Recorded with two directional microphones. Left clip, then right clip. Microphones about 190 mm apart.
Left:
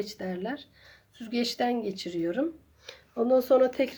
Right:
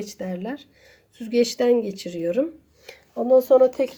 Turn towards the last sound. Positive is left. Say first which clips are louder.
# right 6 dB
turn(degrees=-10)  # may be behind; listen again after turning